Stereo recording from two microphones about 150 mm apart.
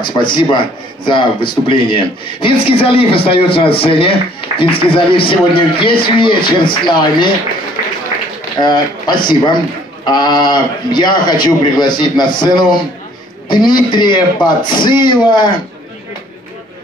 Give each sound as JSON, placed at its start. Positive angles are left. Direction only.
{"t": 0.0, "sound": "a man's voice", "side_deg": 30}
{"t": 8.5, "sound": "a man's voice", "side_deg": 30}